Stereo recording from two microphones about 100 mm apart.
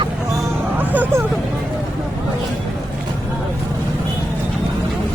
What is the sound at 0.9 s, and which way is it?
Speech, 15° right (ahead or behind).